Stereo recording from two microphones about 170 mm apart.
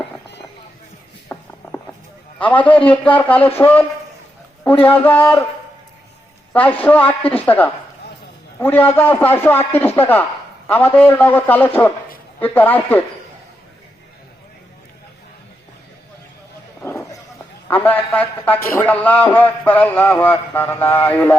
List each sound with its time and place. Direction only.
1.3 s mechanisms: 15° left (ahead or behind)
2.4 s a man's voice: 10° left (ahead or behind)
6.5 s a woman's voice: 10° left (ahead or behind)
16.8 s a sound: 15° left (ahead or behind)
17.7 s a man's voice: 10° left (ahead or behind)